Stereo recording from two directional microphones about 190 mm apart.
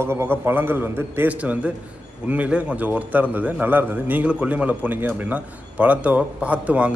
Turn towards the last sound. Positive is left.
turn(degrees=-5)  # may be behind; listen again after turning